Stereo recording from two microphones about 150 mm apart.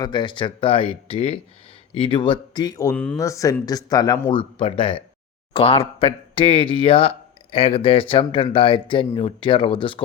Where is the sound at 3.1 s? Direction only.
20° left (ahead or behind).